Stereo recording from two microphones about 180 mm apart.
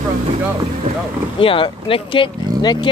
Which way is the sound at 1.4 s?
30° left (ahead or behind).